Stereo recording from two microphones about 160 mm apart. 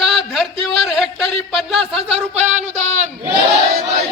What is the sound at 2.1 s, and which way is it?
Speech, 45° right (ahead or behind).